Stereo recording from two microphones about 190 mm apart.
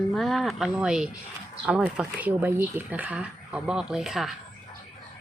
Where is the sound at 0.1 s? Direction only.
Centre (ahead or behind).